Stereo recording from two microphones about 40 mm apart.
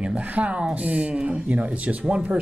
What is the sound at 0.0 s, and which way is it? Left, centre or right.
Speech, right.